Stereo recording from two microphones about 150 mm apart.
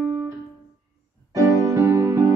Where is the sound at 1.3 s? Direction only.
20° right (ahead or behind).